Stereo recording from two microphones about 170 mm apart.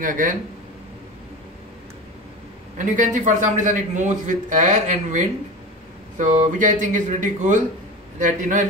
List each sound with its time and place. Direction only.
0.0 s speech: 50° right (ahead or behind)
2.8 s speech: 50° right (ahead or behind)